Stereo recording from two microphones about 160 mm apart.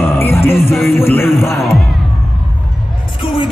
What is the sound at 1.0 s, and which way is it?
Speech, 15° left (ahead or behind).